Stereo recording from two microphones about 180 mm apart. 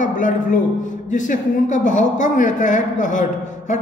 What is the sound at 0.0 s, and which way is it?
A man's voice, 45° left (ahead or behind).